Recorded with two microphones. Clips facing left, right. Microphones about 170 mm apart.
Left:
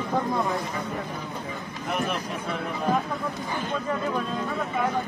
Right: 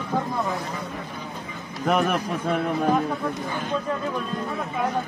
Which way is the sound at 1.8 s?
65° right (ahead or behind).